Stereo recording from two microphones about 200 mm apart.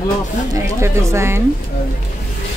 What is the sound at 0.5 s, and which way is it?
Speech, 15° right (ahead or behind).